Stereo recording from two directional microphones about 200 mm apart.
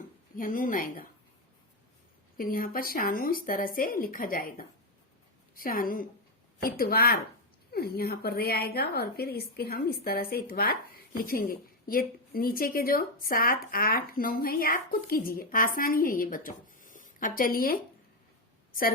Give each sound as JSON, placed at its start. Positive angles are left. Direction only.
{"t": 0.3, "sound": "a woman's voice", "side_deg": 45}
{"t": 2.4, "sound": "a woman's voice", "side_deg": 45}